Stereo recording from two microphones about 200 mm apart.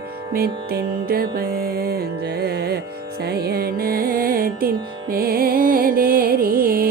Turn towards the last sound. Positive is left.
turn(degrees=-45)  # may be behind; listen again after turning